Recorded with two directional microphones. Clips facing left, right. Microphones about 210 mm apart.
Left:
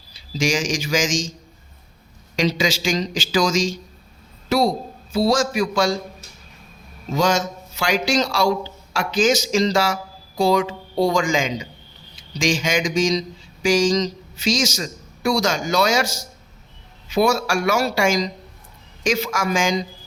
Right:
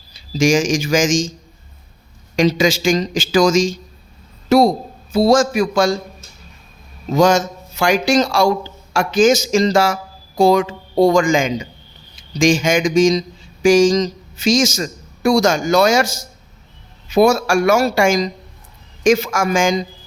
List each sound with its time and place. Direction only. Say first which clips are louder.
0.1 s speech: right 7 dB; 45° right (ahead or behind)
2.3 s a man's voice: right 6 dB; 50° right (ahead or behind)
7.1 s a man's voice: right 6 dB; 50° right (ahead or behind)